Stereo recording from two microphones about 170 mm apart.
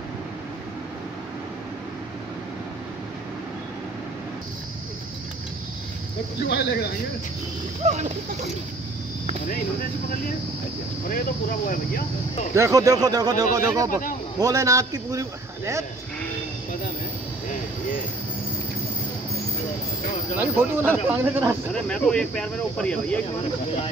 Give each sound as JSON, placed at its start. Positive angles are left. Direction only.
{"t": 6.4, "sound": "speech", "side_deg": 70}
{"t": 7.8, "sound": "speech", "side_deg": -45}
{"t": 11.1, "sound": "speech", "side_deg": 55}
{"t": 12.5, "sound": "a man's voice", "side_deg": -20}
{"t": 20.3, "sound": "speech", "side_deg": -10}
{"t": 21.7, "sound": "speech", "side_deg": 5}